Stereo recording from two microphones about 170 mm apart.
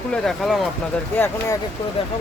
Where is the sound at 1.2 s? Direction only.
20° left (ahead or behind).